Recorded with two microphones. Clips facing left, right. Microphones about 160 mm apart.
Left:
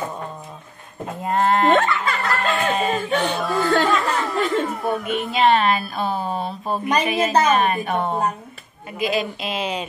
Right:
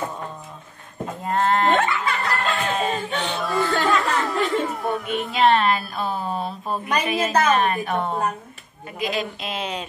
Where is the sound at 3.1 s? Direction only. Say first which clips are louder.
Left 5 dB; 45° left (ahead or behind).